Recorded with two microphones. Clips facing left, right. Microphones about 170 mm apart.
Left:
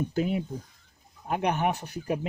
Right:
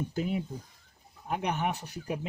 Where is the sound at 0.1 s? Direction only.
70° left (ahead or behind).